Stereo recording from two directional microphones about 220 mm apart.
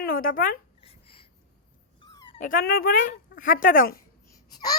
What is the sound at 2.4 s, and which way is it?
Speech, 40° left (ahead or behind).